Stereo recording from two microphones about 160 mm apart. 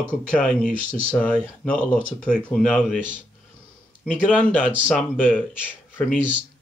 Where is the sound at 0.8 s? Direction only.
55° left (ahead or behind).